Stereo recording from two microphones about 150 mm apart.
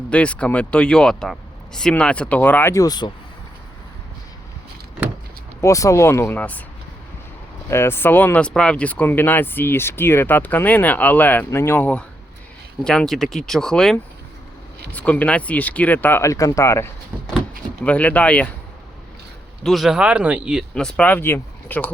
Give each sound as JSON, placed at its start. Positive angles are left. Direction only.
{"t": 0.1, "sound": "speech", "side_deg": 10}
{"t": 5.5, "sound": "speech", "side_deg": 20}
{"t": 7.7, "sound": "speech", "side_deg": 15}
{"t": 19.6, "sound": "speech", "side_deg": 0}
{"t": 20.7, "sound": "speech", "side_deg": 5}